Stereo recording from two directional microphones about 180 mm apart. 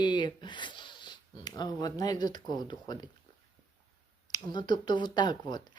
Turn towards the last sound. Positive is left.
turn(degrees=25)  # may be behind; listen again after turning